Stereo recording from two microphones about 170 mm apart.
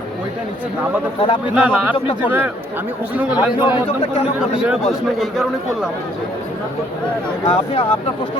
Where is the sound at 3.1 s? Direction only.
10° right (ahead or behind).